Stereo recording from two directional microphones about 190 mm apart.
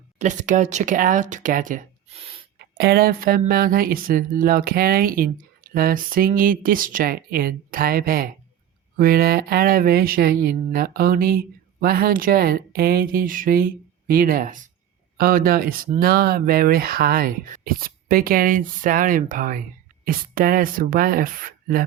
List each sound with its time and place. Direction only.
0.2 s speech: 40° right (ahead or behind)
2.6 s speech: 55° right (ahead or behind)